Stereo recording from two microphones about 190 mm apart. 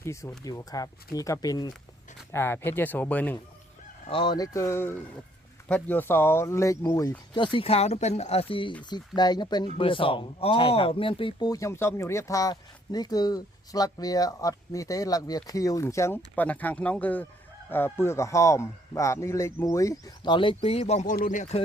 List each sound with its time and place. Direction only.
0.0 s speech: 15° left (ahead or behind)
4.1 s speech: 25° left (ahead or behind); by 21.6 s 40° left (ahead or behind)